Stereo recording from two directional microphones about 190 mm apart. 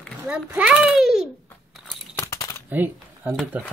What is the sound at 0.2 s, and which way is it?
Babbling, 5° right (ahead or behind).